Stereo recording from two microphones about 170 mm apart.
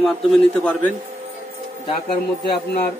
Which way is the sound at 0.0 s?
5° left (ahead or behind).